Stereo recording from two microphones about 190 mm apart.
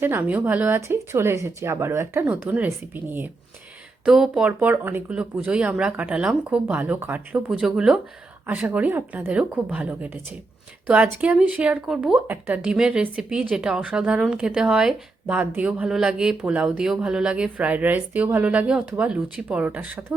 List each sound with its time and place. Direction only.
0.0 s speech: 10° right (ahead or behind)